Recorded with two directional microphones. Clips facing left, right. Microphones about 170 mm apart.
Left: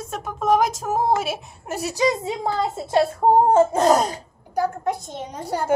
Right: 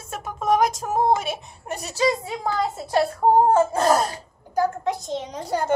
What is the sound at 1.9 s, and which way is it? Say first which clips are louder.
A woman's voice: left 1 dB; 20° left (ahead or behind).